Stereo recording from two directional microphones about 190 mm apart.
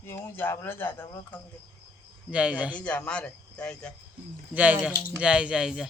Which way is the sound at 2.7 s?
5° left (ahead or behind).